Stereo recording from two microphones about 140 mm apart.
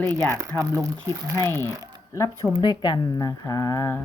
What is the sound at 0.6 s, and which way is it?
Speech, 25° right (ahead or behind).